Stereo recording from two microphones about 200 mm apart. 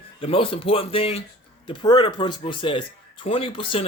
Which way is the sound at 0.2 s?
25° left (ahead or behind).